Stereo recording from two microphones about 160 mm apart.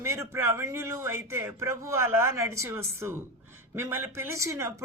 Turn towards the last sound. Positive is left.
turn(degrees=-20)  # may be behind; listen again after turning